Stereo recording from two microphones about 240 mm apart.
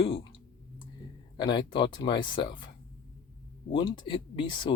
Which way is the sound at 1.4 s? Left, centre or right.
Centre.